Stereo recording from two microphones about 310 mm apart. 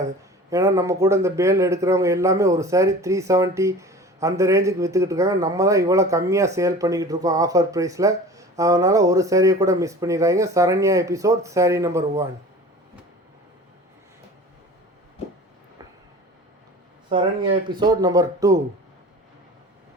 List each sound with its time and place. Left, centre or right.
0.5 s speech: centre
17.1 s speech: centre